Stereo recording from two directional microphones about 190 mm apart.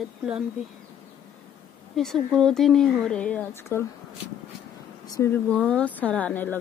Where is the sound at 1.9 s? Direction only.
Centre (ahead or behind).